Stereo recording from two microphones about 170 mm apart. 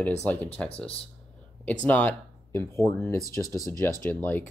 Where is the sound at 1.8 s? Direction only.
10° left (ahead or behind).